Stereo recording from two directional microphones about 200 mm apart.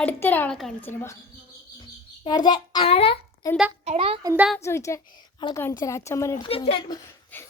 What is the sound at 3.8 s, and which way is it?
Speech, 30° right (ahead or behind).